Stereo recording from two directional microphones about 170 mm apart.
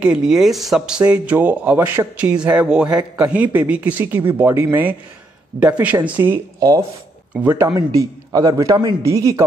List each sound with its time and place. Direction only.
0.0 s speech: 5° right (ahead or behind)
2.9 s a man's voice: 20° right (ahead or behind)
3.3 s speech: 10° right (ahead or behind)
7.6 s a man's voice: 20° right (ahead or behind)